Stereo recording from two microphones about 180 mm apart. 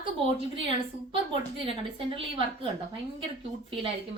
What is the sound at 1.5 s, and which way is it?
Speech, 30° right (ahead or behind).